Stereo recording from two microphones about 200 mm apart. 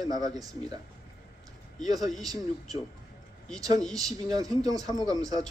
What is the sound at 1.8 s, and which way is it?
Speech, 20° right (ahead or behind).